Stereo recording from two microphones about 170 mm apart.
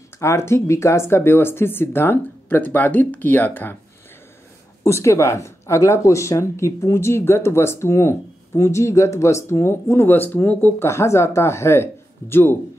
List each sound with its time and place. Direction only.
0.2 s speech: 15° left (ahead or behind)
4.8 s speech: 15° left (ahead or behind)